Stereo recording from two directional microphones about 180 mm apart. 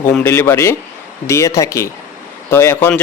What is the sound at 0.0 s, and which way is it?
Speech, 10° left (ahead or behind).